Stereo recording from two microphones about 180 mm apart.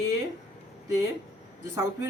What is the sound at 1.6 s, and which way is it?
Speech, 15° right (ahead or behind).